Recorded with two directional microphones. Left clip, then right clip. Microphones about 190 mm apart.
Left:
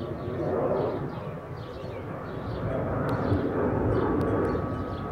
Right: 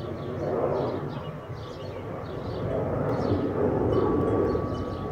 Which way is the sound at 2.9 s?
30° right (ahead or behind).